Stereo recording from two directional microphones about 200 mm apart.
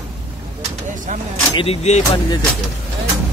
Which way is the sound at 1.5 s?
30° left (ahead or behind).